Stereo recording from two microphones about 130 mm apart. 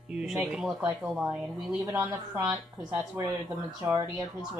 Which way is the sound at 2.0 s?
20° right (ahead or behind).